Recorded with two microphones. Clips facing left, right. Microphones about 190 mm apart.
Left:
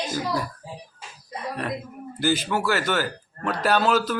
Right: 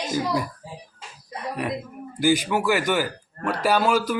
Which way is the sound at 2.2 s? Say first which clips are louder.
Right 3 dB; 15° right (ahead or behind).